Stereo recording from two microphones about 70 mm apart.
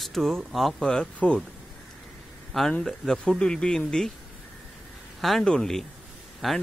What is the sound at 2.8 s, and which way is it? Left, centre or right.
Speech, centre.